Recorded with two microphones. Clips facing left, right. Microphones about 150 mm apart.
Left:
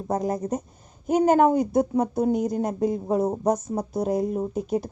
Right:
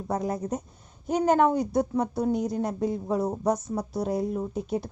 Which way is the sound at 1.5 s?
50° left (ahead or behind).